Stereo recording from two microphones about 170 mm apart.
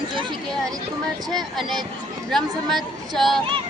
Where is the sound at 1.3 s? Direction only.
Centre (ahead or behind).